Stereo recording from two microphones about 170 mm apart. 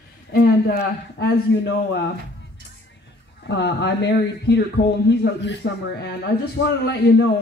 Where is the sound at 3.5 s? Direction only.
90° left.